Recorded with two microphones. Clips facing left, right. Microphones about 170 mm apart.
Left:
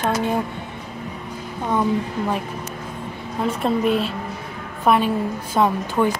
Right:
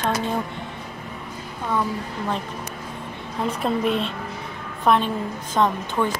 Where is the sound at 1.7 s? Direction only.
15° left (ahead or behind).